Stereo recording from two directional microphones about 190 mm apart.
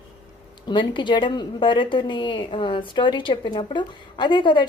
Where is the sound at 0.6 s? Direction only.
25° left (ahead or behind).